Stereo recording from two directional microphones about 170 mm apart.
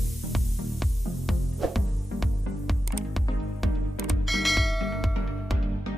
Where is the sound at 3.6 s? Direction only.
Centre (ahead or behind).